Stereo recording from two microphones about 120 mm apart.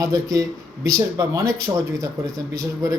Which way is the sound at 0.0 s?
30° right (ahead or behind).